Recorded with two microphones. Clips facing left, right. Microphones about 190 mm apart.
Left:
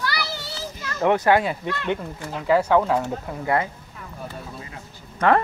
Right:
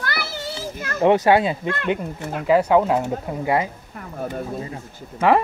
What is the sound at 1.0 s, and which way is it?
A man's voice, 20° right (ahead or behind).